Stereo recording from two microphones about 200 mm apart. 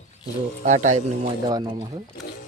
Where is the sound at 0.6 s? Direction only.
35° right (ahead or behind).